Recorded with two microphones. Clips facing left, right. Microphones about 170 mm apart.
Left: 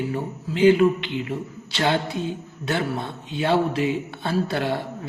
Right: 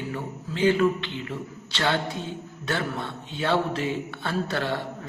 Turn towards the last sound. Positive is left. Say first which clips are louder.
# left 4 dB
turn(degrees=15)  # may be behind; listen again after turning